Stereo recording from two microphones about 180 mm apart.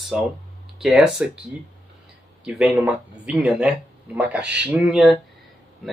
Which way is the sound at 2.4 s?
5° right (ahead or behind).